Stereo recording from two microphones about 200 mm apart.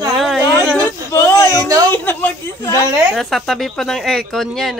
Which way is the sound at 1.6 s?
20° right (ahead or behind).